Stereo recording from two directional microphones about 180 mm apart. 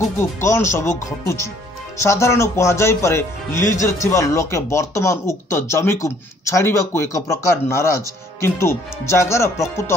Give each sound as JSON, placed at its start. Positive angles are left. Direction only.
{"t": 0.2, "sound": "speech", "side_deg": 15}